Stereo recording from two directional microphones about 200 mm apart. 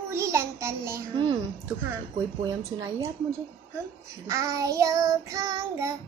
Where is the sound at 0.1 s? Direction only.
15° right (ahead or behind).